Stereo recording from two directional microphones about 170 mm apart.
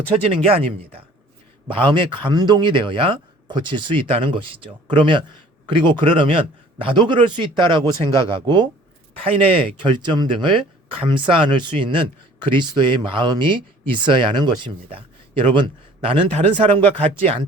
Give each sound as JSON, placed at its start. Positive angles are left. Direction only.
{"t": 0.1, "sound": "speech", "side_deg": -35}